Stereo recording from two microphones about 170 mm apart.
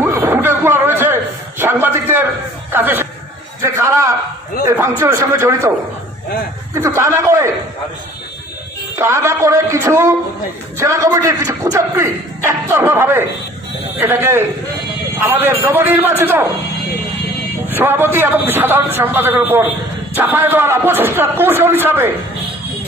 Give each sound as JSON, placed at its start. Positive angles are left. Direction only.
{"t": 0.0, "sound": "a sound", "side_deg": -15}
{"t": 2.7, "sound": "a man's voice", "side_deg": -10}
{"t": 6.7, "sound": "a man's voice", "side_deg": -15}
{"t": 8.9, "sound": "a man's voice", "side_deg": -15}
{"t": 17.7, "sound": "a man's voice", "side_deg": -10}